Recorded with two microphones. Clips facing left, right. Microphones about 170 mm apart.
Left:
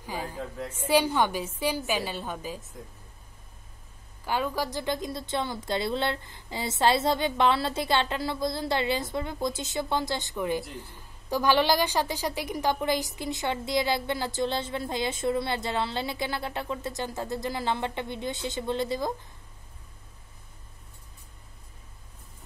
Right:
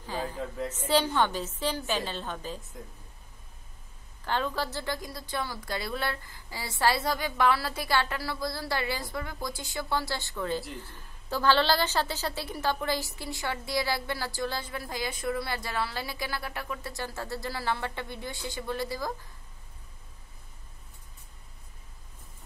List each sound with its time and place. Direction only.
0.0 s a sound: 10° left (ahead or behind)
0.4 s a woman's voice: 5° left (ahead or behind)
4.2 s a woman's voice: 10° left (ahead or behind)